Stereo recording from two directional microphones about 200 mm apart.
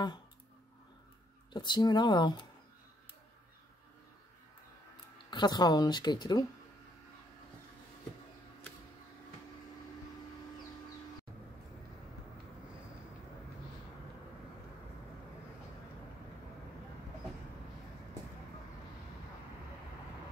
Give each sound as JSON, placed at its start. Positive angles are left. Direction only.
{"t": 1.5, "sound": "speech", "side_deg": 20}
{"t": 5.3, "sound": "speech", "side_deg": 20}